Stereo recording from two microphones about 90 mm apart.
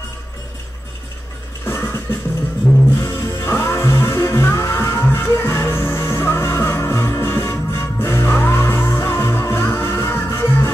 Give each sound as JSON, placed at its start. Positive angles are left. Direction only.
{"t": 1.7, "sound": "music", "side_deg": 30}